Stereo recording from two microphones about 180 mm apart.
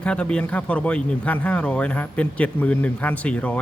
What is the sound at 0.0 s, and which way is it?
Speech, 5° left (ahead or behind).